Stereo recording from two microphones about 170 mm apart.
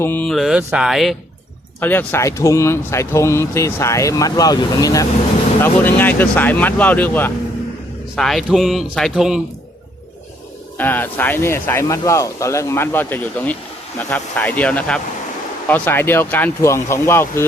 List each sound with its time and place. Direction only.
0.0 s speech: 10° left (ahead or behind)
1.8 s speech: 10° left (ahead or behind)
10.8 s speech: 10° left (ahead or behind)